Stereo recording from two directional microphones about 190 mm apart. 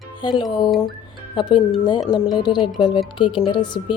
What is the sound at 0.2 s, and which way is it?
Speech, 25° left (ahead or behind).